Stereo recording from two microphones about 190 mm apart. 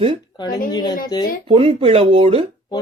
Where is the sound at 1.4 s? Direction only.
25° right (ahead or behind).